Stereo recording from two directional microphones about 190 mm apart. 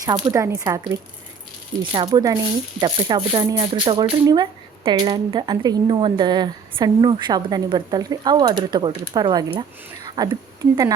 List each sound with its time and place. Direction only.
0.0 s a woman's voice: 20° right (ahead or behind)